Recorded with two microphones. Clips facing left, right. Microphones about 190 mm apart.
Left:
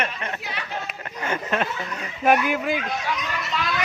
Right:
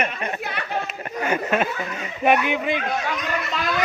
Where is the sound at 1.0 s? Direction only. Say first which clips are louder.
Right 4 dB; 10° right (ahead or behind).